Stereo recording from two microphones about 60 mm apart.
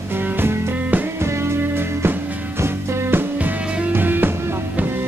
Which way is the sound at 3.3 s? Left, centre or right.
Right.